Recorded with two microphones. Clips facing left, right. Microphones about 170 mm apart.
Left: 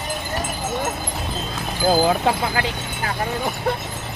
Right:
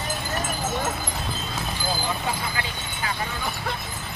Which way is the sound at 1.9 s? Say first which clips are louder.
Left 12 dB; 80° left.